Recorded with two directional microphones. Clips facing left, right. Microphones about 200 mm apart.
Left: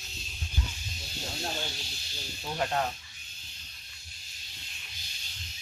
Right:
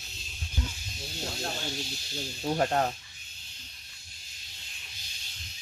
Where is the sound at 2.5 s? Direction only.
40° right (ahead or behind).